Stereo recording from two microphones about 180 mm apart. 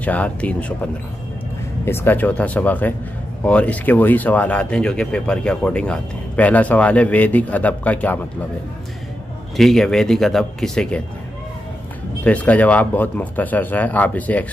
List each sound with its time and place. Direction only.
0.0 s speech: 10° left (ahead or behind)
1.9 s speech: 10° left (ahead or behind)
9.6 s speech: centre (ahead or behind)
12.3 s speech: 10° left (ahead or behind)